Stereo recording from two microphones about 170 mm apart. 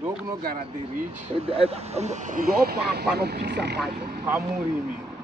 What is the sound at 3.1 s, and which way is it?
Speech, 70° right (ahead or behind).